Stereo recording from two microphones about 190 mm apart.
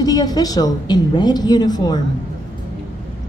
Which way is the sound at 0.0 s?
20° left (ahead or behind).